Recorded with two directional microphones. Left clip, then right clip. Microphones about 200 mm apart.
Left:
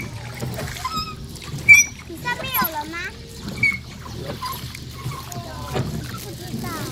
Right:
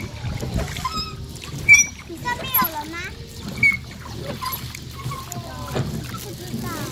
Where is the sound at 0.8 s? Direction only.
20° left (ahead or behind).